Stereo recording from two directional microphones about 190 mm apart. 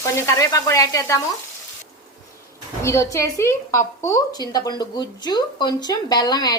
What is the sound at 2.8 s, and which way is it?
A woman's voice, 15° left (ahead or behind).